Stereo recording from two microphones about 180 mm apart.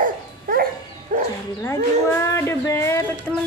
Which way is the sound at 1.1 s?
55° right (ahead or behind).